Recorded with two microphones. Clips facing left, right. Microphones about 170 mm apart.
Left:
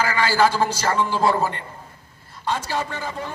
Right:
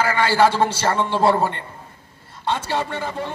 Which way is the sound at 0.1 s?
25° right (ahead or behind).